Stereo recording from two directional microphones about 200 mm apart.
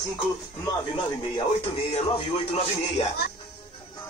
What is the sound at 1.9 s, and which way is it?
Speech, 30° left (ahead or behind).